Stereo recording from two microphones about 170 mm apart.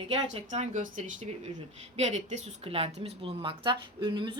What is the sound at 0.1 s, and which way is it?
A woman's voice, 40° right (ahead or behind).